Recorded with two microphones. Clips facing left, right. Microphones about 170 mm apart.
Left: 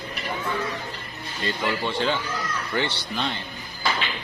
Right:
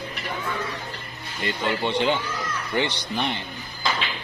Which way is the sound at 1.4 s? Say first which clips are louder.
Right 1 dB; 20° right (ahead or behind).